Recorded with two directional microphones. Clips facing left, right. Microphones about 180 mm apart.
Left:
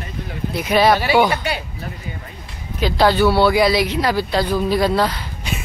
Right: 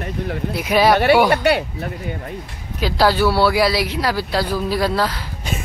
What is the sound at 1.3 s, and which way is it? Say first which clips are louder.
Speech: right 7 dB; 60° right (ahead or behind).